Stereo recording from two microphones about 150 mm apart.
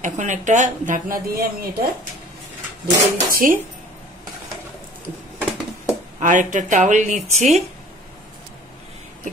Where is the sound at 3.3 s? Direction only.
70° right (ahead or behind).